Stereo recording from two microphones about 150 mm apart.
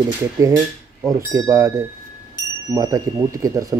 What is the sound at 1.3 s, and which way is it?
Speech, 25° right (ahead or behind).